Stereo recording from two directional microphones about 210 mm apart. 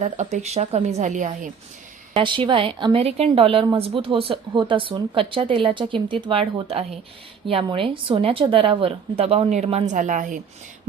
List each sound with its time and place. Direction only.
0.0 s a woman's voice: 35° right (ahead or behind)
2.1 s a woman's voice: 25° right (ahead or behind)